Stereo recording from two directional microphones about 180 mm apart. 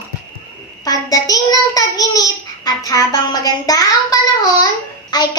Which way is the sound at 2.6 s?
20° left (ahead or behind).